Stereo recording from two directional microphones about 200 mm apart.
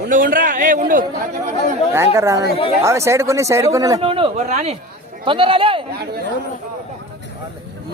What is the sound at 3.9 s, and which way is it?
A man's voice, 25° right (ahead or behind).